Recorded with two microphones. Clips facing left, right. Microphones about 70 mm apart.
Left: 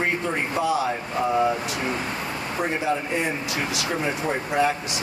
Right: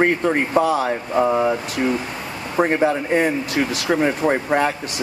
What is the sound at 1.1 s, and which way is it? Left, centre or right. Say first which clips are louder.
Speech: right 5 dB; right.